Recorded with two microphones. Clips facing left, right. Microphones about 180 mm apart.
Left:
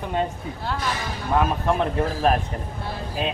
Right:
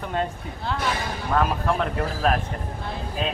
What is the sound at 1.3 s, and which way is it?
Speech, 15° left (ahead or behind).